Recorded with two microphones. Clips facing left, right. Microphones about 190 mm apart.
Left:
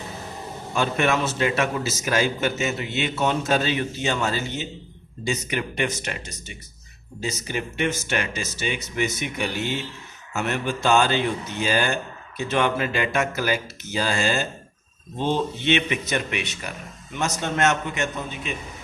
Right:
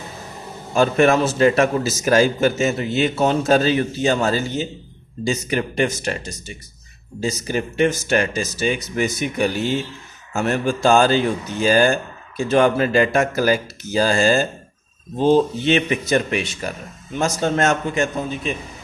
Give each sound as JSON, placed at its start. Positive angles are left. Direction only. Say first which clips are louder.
{"t": 0.7, "sound": "a man's voice", "louder": "right 7 dB", "side_deg": -40}